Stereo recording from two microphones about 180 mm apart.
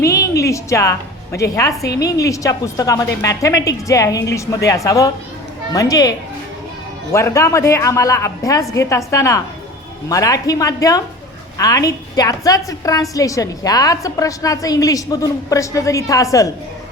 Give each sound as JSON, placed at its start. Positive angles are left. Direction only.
{"t": 0.0, "sound": "a woman's voice", "side_deg": 15}